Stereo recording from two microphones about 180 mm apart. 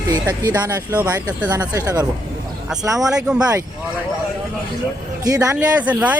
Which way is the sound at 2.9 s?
5° right (ahead or behind).